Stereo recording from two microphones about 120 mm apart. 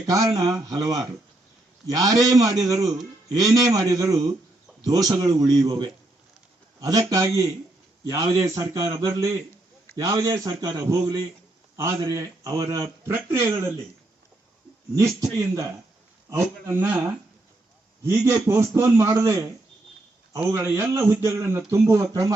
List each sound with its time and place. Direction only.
0.3 s a man's voice: 35° right (ahead or behind)
14.9 s a man's voice: 25° right (ahead or behind)
18.0 s a man's voice: 25° right (ahead or behind)
20.5 s a man's voice: 20° right (ahead or behind)